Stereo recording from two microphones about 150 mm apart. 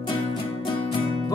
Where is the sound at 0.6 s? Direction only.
35° left (ahead or behind).